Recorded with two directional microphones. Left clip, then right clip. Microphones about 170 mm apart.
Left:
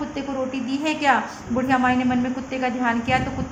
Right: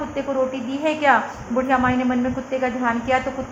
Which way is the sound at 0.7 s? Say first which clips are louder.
Right 2 dB; 35° left (ahead or behind).